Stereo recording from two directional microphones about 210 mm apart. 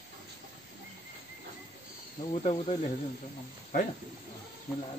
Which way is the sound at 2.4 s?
30° left (ahead or behind).